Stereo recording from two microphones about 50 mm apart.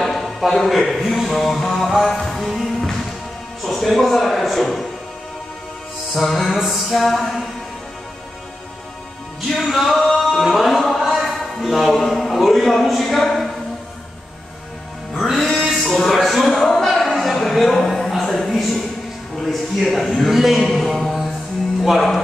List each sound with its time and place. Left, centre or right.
0.0 s speech: centre
3.6 s music: centre
6.1 s music: centre
9.6 s music: centre
11.1 s a sound: centre
15.1 s music: centre
15.6 s a sound: centre
19.5 s a man's voice: centre
21.8 s music: centre